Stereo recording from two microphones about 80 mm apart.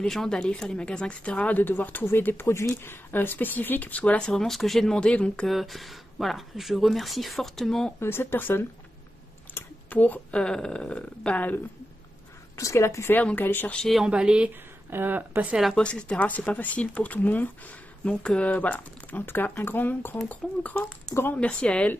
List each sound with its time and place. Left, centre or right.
0.0 s a woman's voice: centre
5.5 s speech: centre
8.0 s speech: left
12.5 s a woman's voice: left
13.2 s speech: left
13.7 s speech: centre
14.0 s speech: centre
14.9 s a woman's voice: right
15.7 s speech: centre
21.1 s speech: left
21.4 s speech: centre